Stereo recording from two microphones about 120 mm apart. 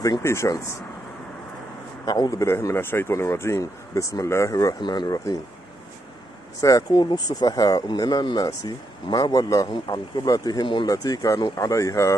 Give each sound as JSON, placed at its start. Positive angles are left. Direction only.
{"t": 0.2, "sound": "speech", "side_deg": 25}
{"t": 2.0, "sound": "speech", "side_deg": 35}
{"t": 2.4, "sound": "speech", "side_deg": 20}
{"t": 6.6, "sound": "speech", "side_deg": 30}